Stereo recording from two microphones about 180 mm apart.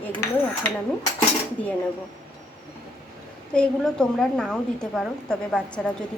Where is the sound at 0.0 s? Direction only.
10° left (ahead or behind).